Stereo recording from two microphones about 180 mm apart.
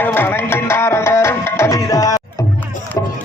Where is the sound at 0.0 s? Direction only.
10° left (ahead or behind).